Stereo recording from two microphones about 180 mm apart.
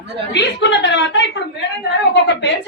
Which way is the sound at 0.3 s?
75° left (ahead or behind).